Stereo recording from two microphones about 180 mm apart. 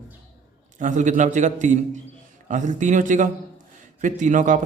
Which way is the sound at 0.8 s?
45° right (ahead or behind).